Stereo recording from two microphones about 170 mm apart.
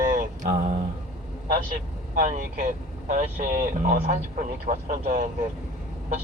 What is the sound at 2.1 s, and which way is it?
Speech, 50° right (ahead or behind).